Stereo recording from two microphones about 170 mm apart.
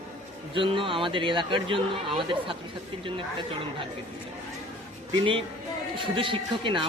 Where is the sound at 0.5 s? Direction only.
30° right (ahead or behind).